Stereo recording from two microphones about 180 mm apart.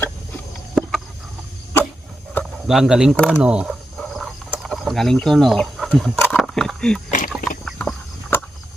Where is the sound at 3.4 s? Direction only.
5° right (ahead or behind).